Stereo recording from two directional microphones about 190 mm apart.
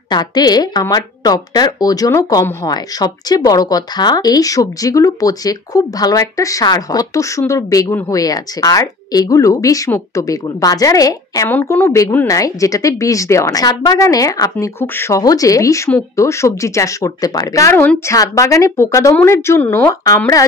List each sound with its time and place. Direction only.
0.1 s a woman's voice: 20° left (ahead or behind)